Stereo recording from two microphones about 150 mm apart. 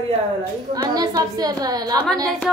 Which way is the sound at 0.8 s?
25° right (ahead or behind).